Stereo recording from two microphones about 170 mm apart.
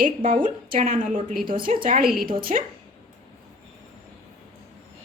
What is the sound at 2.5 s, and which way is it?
Speech, 45° right (ahead or behind).